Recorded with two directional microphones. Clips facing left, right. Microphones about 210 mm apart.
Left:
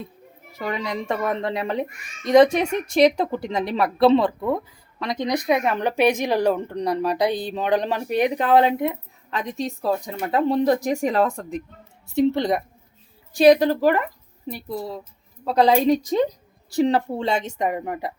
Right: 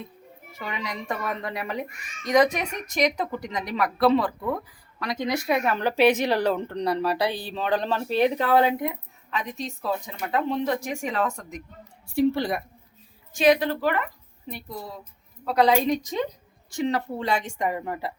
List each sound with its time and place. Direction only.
0.6 s a child's voice: 35° left (ahead or behind)
9.3 s a child's voice: 35° left (ahead or behind)
13.3 s a child's voice: 35° left (ahead or behind); by 18.1 s 20° left (ahead or behind)